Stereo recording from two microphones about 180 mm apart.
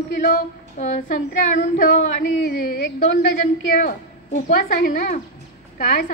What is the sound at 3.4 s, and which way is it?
A woman's voice, 55° left (ahead or behind).